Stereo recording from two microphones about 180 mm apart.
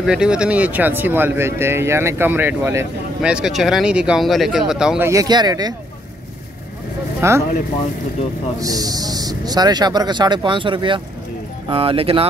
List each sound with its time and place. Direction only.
0.0 s speech: 5° right (ahead or behind)
3.2 s speech: 5° right (ahead or behind); by 5.8 s 20° right (ahead or behind)
7.2 s speech: 15° right (ahead or behind)
8.5 s speech: 20° right (ahead or behind)